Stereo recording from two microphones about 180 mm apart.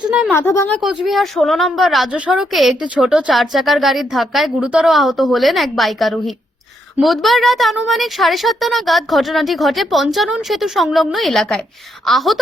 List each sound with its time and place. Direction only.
0.3 s a woman's voice: 15° left (ahead or behind)
1.0 s a woman's voice: centre (ahead or behind)